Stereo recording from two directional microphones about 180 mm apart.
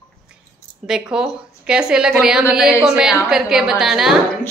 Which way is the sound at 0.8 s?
5° right (ahead or behind).